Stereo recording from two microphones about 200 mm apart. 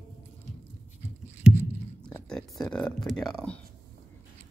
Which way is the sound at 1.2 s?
10° left (ahead or behind).